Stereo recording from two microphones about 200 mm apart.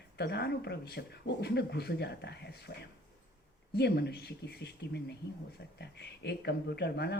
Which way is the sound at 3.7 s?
55° left (ahead or behind).